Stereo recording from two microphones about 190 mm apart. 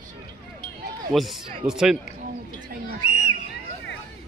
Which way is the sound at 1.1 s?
Centre (ahead or behind).